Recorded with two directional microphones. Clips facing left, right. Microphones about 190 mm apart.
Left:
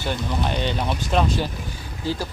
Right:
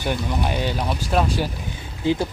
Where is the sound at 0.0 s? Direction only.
10° right (ahead or behind).